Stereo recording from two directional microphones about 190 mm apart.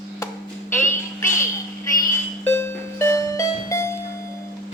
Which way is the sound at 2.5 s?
15° left (ahead or behind).